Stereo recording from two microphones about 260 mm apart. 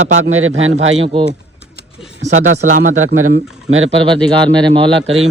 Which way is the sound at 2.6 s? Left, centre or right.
Right.